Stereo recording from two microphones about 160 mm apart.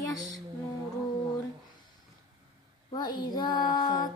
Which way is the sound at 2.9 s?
25° left (ahead or behind).